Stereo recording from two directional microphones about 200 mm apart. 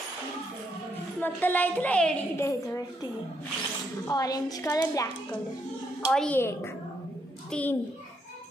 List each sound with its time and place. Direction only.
1.2 s a child's voice: 10° left (ahead or behind)
4.1 s a woman's voice: 20° left (ahead or behind)
6.0 s a child's voice: 5° left (ahead or behind)